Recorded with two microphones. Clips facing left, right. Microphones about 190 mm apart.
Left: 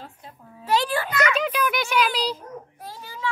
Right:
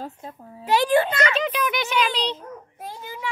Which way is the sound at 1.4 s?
5° left (ahead or behind).